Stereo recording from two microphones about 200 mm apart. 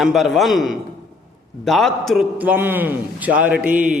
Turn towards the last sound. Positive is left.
turn(degrees=-5)  # may be behind; listen again after turning